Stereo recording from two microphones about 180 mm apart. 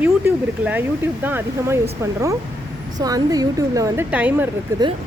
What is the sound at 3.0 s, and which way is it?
Speech, 20° right (ahead or behind).